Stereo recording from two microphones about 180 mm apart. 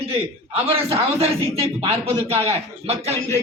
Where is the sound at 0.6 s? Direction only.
35° right (ahead or behind).